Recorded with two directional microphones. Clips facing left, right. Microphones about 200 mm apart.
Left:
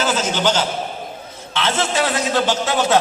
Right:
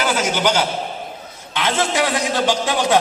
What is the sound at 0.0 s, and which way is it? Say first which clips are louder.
A man's voice: even; 10° right (ahead or behind).